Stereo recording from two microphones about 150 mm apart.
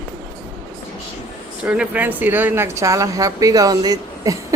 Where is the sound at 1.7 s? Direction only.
10° right (ahead or behind).